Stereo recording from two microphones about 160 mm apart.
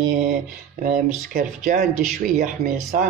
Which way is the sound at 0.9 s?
55° right (ahead or behind).